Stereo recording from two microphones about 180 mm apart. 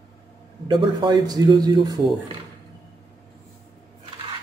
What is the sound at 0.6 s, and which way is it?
A man's voice, 25° right (ahead or behind).